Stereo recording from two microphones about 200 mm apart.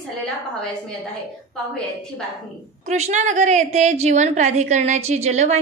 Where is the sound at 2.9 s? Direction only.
35° right (ahead or behind).